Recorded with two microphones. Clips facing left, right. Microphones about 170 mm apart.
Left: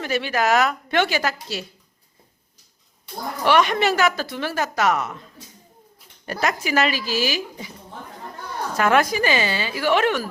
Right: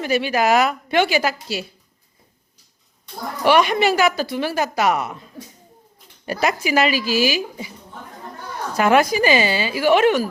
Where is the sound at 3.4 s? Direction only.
10° right (ahead or behind).